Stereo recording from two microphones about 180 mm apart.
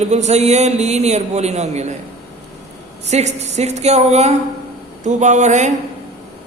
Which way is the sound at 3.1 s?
40° right (ahead or behind).